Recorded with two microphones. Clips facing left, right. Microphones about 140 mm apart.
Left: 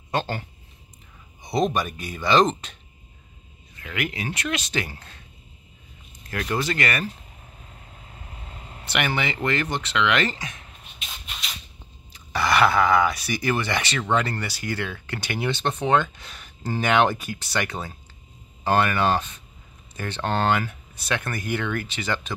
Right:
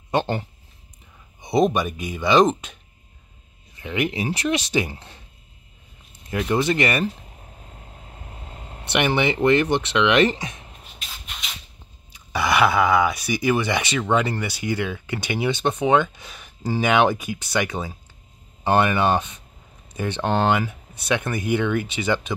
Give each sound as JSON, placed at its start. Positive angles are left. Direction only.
{"t": 0.1, "sound": "speech", "side_deg": -20}
{"t": 3.8, "sound": "speech", "side_deg": -25}
{"t": 6.5, "sound": "speech", "side_deg": -20}
{"t": 8.9, "sound": "speech", "side_deg": -20}
{"t": 11.2, "sound": "a sound", "side_deg": 0}
{"t": 12.1, "sound": "speech", "side_deg": -15}
{"t": 18.6, "sound": "speech", "side_deg": -20}